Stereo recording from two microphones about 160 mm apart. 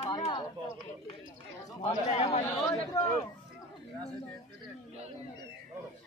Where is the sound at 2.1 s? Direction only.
45° left (ahead or behind).